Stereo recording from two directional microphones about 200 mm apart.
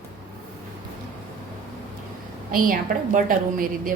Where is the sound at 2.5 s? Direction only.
45° right (ahead or behind).